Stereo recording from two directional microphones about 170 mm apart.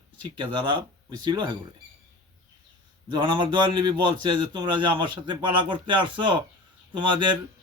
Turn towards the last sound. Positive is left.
turn(degrees=-30)  # may be behind; listen again after turning